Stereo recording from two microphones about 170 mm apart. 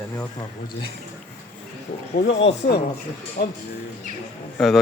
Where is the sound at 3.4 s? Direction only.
70° left (ahead or behind).